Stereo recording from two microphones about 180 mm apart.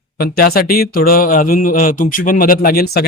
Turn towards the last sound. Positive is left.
turn(degrees=60)  # may be behind; listen again after turning